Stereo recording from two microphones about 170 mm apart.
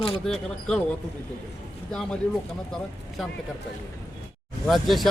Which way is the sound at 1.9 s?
5° left (ahead or behind).